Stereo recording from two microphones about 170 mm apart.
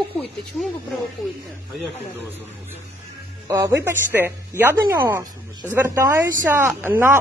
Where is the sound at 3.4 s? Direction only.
15° right (ahead or behind).